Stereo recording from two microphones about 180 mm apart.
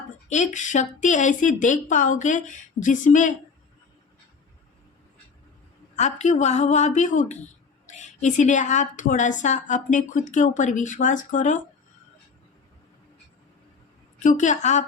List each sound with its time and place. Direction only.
0.3 s speech: 40° left (ahead or behind)
6.0 s a woman's voice: 40° left (ahead or behind)
14.2 s a woman's voice: 40° left (ahead or behind)